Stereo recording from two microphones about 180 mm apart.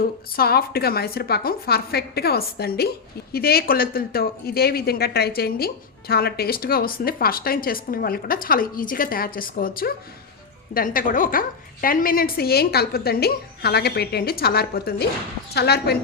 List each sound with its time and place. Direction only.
0.0 s speech: 60° left (ahead or behind)